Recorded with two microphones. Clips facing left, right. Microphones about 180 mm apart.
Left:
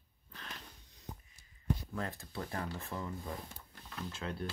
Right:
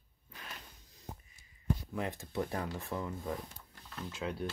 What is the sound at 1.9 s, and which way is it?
Speech, 15° right (ahead or behind).